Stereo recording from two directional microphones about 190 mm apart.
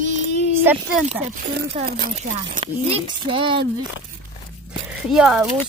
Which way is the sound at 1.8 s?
50° right (ahead or behind).